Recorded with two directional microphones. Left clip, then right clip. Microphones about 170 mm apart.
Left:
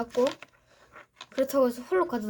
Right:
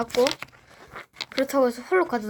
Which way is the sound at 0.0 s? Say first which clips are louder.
Right 4 dB; 45° right (ahead or behind).